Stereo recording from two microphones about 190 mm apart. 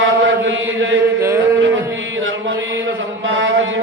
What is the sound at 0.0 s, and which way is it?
Chant, 90° right.